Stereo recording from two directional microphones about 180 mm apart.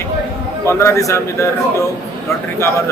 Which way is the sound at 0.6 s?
15° left (ahead or behind).